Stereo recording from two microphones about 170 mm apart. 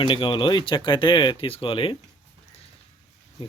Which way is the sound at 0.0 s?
30° left (ahead or behind).